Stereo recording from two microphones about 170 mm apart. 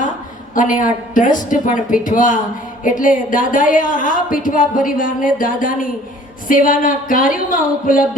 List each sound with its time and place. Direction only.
0.5 s a woman's voice: 50° left (ahead or behind)